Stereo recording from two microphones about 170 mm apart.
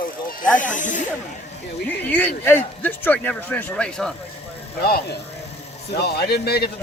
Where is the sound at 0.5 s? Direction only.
50° left (ahead or behind).